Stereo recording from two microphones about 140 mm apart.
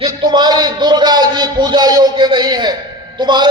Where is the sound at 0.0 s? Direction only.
30° right (ahead or behind).